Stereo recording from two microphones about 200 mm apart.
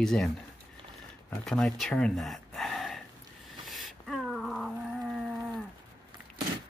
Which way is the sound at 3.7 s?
Centre (ahead or behind).